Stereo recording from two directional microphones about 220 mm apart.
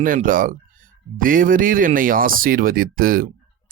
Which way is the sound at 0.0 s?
40° right (ahead or behind).